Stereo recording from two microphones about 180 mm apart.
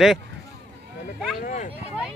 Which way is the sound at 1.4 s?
45° left (ahead or behind).